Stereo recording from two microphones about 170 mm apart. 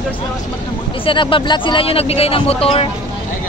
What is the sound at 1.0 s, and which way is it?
Speech, 30° left (ahead or behind).